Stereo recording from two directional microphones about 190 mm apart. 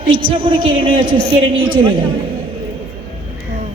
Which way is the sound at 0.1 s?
25° right (ahead or behind).